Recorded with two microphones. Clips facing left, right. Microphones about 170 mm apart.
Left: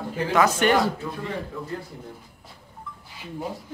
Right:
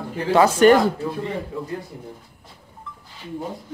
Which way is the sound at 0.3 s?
35° right (ahead or behind).